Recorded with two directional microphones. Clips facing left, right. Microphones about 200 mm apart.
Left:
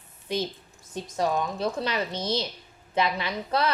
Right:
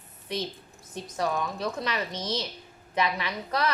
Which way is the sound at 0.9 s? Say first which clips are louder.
Left 3 dB; 30° left (ahead or behind).